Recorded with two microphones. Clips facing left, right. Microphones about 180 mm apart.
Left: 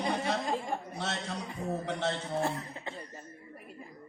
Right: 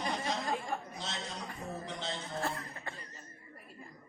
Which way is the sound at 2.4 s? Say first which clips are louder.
Left 4 dB; 20° left (ahead or behind).